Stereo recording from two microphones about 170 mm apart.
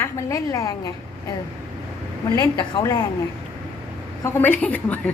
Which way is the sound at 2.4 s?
25° left (ahead or behind).